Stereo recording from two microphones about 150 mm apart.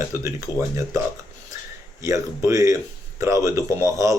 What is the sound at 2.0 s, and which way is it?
Speech, 20° right (ahead or behind).